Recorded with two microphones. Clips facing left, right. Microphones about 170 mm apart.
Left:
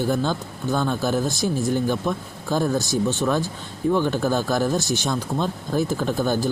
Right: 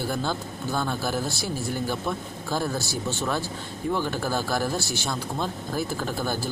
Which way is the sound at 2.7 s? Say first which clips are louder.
Left 7 dB; 15° left (ahead or behind).